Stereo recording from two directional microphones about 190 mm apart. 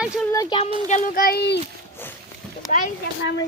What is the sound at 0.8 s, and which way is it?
Speech, 40° left (ahead or behind).